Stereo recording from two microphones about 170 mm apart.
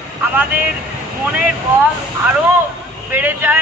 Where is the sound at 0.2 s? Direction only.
10° right (ahead or behind).